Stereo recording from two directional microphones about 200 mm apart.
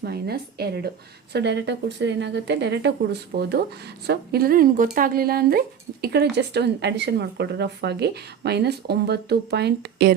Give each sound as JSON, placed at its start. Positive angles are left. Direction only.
{"t": 0.0, "sound": "a woman's voice", "side_deg": -50}